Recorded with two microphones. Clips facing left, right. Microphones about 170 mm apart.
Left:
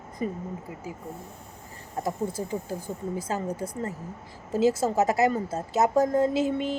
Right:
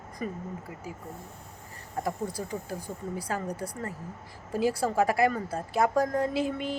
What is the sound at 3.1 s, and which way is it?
A woman's voice, 25° left (ahead or behind).